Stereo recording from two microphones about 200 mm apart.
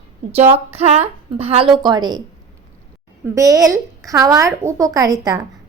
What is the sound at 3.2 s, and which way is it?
A woman's voice, 15° right (ahead or behind).